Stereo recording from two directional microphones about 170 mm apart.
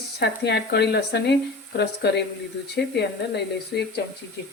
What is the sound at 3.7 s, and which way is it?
Speech, 75° left (ahead or behind).